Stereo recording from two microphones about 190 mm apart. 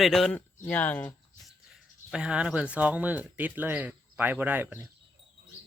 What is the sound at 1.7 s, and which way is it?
Speech, 5° right (ahead or behind).